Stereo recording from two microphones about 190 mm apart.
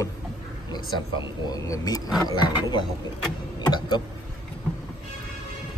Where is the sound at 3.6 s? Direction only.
20° left (ahead or behind).